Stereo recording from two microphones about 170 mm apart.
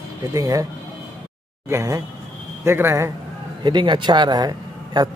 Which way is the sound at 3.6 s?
25° right (ahead or behind).